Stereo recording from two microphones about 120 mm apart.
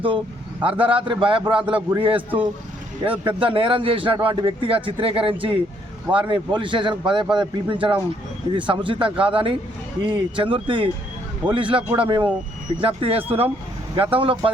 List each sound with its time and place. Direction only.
0.6 s a man's voice: 45° right (ahead or behind)